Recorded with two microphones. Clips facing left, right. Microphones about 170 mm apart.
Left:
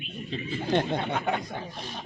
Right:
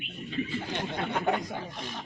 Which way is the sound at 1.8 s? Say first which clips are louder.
Even; 30° left (ahead or behind).